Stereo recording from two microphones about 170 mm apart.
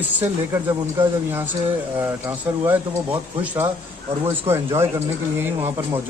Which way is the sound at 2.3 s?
10° right (ahead or behind).